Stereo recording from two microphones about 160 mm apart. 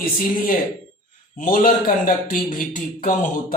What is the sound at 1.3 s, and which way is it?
A man's voice, 55° left (ahead or behind).